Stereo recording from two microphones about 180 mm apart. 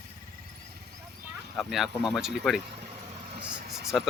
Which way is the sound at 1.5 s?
Centre (ahead or behind).